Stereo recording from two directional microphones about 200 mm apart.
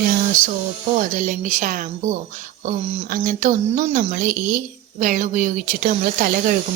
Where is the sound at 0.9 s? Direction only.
40° right (ahead or behind).